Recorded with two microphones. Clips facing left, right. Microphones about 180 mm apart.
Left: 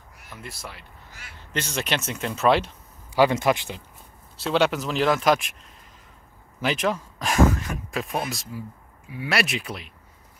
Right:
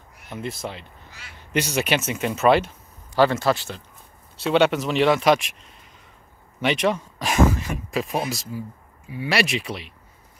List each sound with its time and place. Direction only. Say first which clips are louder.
0.3 s speech: right 9 dB; 25° right (ahead or behind)
1.5 s speech: right 5 dB; 10° right (ahead or behind)
3.2 s speech: right 1 dB; 15° left (ahead or behind)
4.4 s speech: right 3 dB; centre (ahead or behind)